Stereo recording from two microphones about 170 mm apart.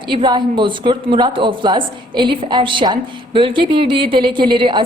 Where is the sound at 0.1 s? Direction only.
30° right (ahead or behind).